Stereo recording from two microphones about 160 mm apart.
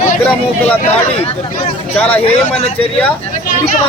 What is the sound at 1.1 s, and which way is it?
Speech, 35° left (ahead or behind).